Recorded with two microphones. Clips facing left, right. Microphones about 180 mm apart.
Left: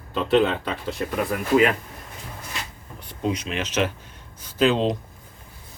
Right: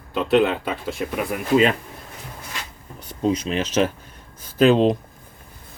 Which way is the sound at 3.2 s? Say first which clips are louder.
Right 5 dB; 35° right (ahead or behind).